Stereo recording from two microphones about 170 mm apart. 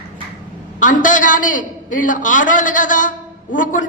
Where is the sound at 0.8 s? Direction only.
50° left (ahead or behind).